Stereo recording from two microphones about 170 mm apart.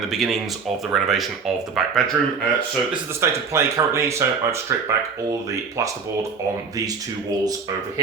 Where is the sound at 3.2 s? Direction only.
15° right (ahead or behind).